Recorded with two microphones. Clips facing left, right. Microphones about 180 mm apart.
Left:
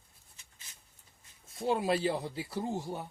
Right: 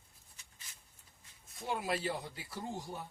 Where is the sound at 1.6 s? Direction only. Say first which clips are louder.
Left 7 dB; 30° left (ahead or behind).